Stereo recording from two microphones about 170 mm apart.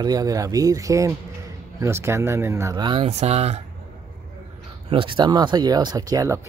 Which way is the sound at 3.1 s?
40° right (ahead or behind).